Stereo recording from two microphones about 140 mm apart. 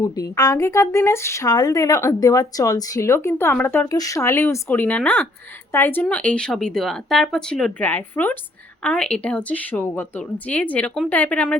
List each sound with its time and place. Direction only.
0.0 s speech: 25° left (ahead or behind); by 11.5 s 10° left (ahead or behind)